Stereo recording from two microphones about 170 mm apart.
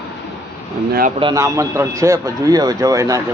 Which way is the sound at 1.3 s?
20° right (ahead or behind).